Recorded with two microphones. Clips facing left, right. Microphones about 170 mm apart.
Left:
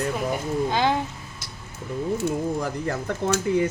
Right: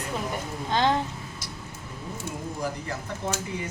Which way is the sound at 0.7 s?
10° left (ahead or behind).